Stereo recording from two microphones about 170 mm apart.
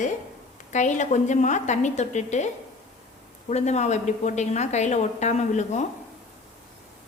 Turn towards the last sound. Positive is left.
turn(degrees=45)  # may be behind; listen again after turning